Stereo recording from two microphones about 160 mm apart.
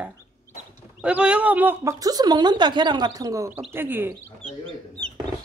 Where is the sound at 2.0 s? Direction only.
25° right (ahead or behind).